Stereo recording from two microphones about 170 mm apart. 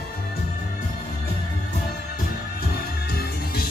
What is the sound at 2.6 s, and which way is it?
Music, 65° left (ahead or behind).